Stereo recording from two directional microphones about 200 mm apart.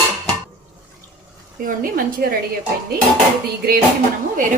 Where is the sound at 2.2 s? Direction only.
50° right (ahead or behind).